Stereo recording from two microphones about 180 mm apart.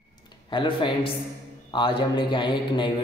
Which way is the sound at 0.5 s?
25° left (ahead or behind).